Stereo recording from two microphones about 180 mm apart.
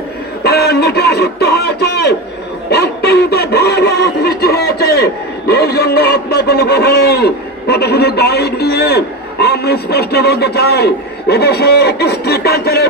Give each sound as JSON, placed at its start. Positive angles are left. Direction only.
{"t": 0.4, "sound": "speech", "side_deg": 65}